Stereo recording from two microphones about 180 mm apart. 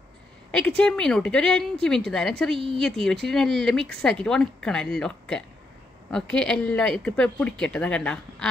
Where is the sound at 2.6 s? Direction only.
30° right (ahead or behind).